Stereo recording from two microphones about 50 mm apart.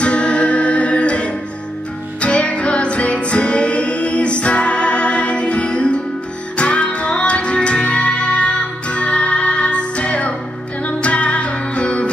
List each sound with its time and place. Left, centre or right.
0.0 s music: left